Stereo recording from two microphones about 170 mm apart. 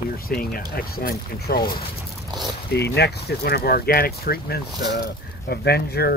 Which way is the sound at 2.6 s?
80° left.